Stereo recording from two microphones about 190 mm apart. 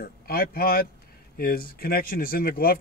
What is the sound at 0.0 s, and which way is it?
Speech, 50° left (ahead or behind).